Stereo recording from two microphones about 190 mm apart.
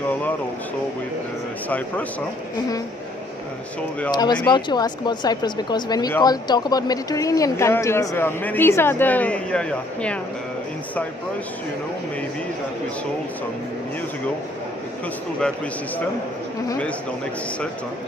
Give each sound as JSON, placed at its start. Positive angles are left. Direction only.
{"t": 4.1, "sound": "speech", "side_deg": 20}